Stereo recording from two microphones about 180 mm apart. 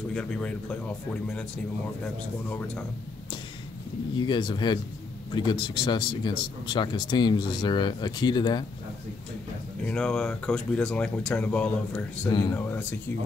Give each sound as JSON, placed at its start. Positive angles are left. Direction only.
{"t": 0.1, "sound": "speech", "side_deg": 5}
{"t": 4.2, "sound": "speech", "side_deg": 25}
{"t": 9.8, "sound": "speech", "side_deg": 5}
{"t": 12.3, "sound": "speech", "side_deg": 25}
{"t": 12.5, "sound": "speech", "side_deg": 10}